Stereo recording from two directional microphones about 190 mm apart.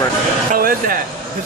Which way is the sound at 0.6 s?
50° right (ahead or behind).